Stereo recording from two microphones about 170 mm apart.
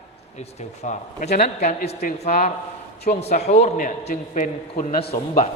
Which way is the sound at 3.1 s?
40° left (ahead or behind).